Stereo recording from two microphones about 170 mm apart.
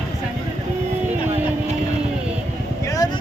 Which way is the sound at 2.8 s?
20° left (ahead or behind).